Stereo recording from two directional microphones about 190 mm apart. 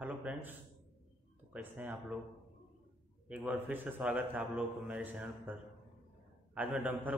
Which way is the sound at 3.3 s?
10° right (ahead or behind).